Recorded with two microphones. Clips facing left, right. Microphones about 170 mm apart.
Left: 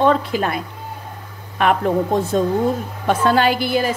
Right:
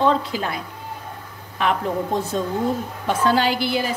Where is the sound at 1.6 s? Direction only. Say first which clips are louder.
Left 4 dB; 55° left (ahead or behind).